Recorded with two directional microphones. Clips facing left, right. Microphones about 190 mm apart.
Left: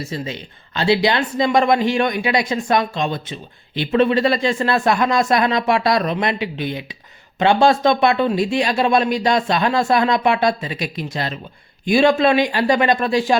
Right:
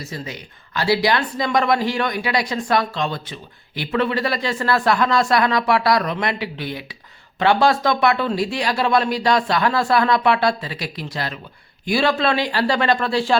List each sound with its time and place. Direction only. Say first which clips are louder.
0.0 s speech: left 4 dB; 25° left (ahead or behind)